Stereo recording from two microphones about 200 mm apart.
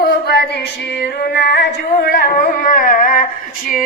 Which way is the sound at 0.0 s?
50° left (ahead or behind).